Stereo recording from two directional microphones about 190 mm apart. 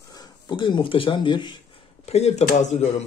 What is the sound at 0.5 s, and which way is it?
Speech, 25° left (ahead or behind).